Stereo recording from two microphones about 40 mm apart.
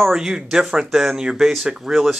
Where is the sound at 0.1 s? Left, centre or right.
Centre.